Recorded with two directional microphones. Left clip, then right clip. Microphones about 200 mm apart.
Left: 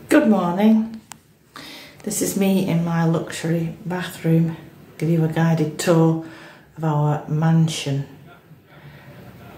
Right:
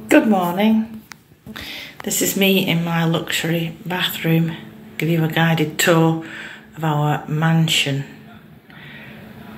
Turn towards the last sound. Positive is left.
turn(degrees=5)  # may be behind; listen again after turning